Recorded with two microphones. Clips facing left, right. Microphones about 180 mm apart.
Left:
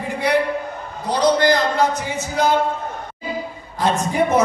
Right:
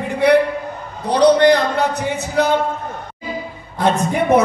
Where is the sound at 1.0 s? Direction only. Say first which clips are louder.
Right 5 dB; 65° right (ahead or behind).